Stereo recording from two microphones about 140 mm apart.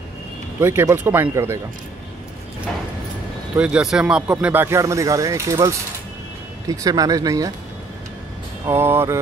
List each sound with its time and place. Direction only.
0.6 s speech: 20° right (ahead or behind)
3.5 s speech: 10° right (ahead or behind); by 7.5 s 25° right (ahead or behind)
8.6 s speech: 15° right (ahead or behind)